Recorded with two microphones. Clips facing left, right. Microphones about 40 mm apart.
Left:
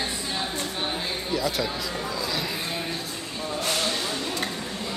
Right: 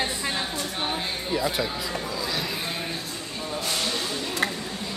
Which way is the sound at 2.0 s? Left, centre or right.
Centre.